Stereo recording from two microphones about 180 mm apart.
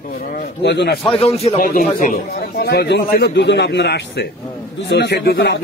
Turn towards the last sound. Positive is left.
turn(degrees=65)  # may be behind; listen again after turning